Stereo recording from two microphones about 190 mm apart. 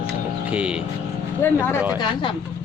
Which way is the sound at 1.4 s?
10° left (ahead or behind).